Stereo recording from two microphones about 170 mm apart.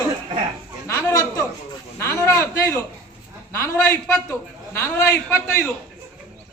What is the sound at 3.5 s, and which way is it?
A man's voice, 15° left (ahead or behind).